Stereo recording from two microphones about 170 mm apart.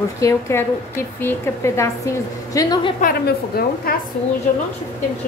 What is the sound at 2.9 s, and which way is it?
A woman's voice, 60° left (ahead or behind).